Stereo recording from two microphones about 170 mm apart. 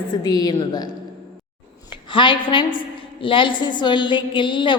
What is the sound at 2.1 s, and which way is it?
A woman's voice, 30° left (ahead or behind).